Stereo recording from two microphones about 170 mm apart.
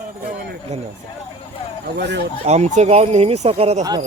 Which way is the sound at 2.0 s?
85° right.